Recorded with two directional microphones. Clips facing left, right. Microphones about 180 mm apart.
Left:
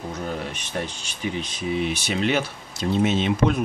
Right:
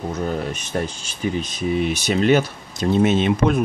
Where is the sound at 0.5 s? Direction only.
45° right (ahead or behind).